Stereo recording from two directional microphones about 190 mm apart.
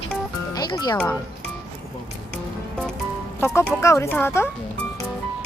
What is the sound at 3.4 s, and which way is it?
Speech, 15° left (ahead or behind).